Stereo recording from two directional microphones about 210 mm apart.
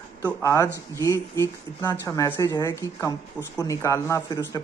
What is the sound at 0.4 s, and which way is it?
A man's voice, 15° left (ahead or behind).